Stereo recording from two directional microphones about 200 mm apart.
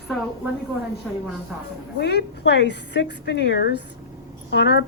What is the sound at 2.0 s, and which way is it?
A woman's voice, 60° left (ahead or behind).